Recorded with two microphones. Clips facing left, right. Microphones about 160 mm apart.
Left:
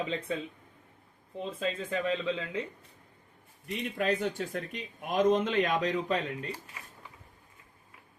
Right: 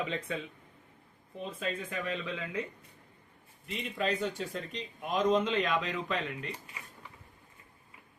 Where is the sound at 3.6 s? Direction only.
50° left (ahead or behind).